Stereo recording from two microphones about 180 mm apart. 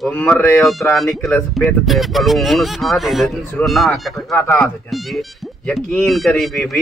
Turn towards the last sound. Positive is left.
turn(degrees=0)  # may be behind; listen again after turning